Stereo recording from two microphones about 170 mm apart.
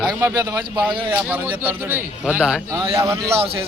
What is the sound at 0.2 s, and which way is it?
Speech, 15° right (ahead or behind).